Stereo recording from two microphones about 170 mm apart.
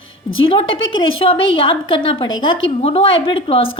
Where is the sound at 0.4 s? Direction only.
30° left (ahead or behind).